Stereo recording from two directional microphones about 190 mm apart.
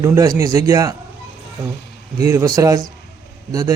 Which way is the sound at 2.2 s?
15° right (ahead or behind).